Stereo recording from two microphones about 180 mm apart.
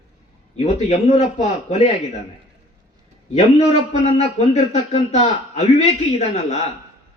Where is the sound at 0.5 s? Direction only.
40° left (ahead or behind).